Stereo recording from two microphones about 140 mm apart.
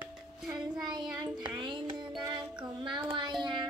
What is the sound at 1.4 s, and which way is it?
Music, 35° right (ahead or behind).